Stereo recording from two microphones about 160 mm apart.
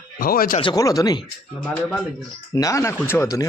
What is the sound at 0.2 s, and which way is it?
Speech, 65° left (ahead or behind).